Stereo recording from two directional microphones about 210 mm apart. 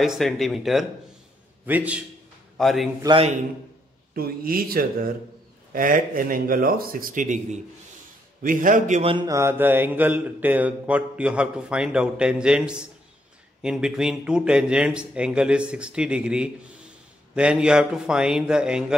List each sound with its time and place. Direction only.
0.0 s speech: centre (ahead or behind)
1.7 s mantra: 5° right (ahead or behind)
2.5 s a man's voice: centre (ahead or behind)
3.0 s a man's voice: 20° right (ahead or behind)
4.1 s speech: 45° right (ahead or behind)
8.4 s a man's voice: 40° right (ahead or behind)
9.1 s mantra: 15° right (ahead or behind)
13.6 s speech: 5° right (ahead or behind)